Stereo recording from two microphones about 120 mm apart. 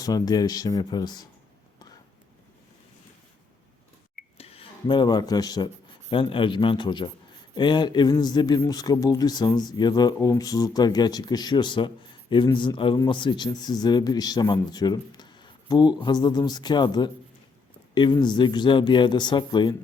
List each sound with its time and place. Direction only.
0.0 s speech: 35° left (ahead or behind)
4.4 s speech: 55° left (ahead or behind); by 19.7 s 40° left (ahead or behind)